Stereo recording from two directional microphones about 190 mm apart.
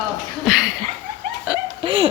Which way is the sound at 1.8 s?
30° right (ahead or behind).